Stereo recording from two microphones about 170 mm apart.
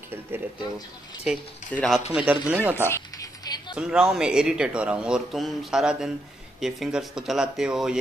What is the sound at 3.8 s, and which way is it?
Speech, 5° right (ahead or behind).